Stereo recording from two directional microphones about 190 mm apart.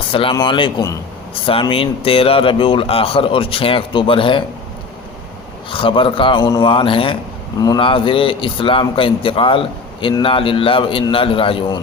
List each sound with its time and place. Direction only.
0.1 s speech: 30° left (ahead or behind)
5.7 s speech: 25° left (ahead or behind)